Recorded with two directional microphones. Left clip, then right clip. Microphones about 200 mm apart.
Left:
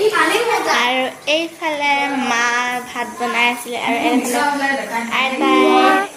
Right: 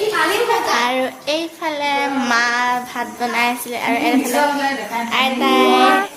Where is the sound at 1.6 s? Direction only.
10° right (ahead or behind); by 5.8 s 25° right (ahead or behind).